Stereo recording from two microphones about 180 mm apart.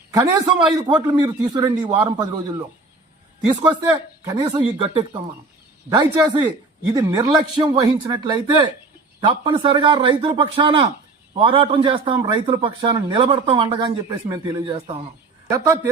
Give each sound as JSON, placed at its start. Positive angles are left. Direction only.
{"t": 0.1, "sound": "a man's voice", "side_deg": -20}